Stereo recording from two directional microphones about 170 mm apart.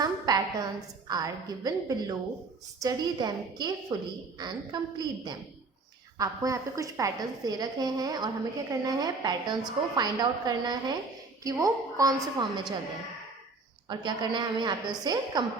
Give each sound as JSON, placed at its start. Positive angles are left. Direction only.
{"t": 0.0, "sound": "a woman's voice", "side_deg": -20}
{"t": 13.8, "sound": "a woman's voice", "side_deg": -25}